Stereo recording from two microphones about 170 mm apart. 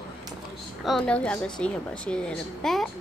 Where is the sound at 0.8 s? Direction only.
5° left (ahead or behind).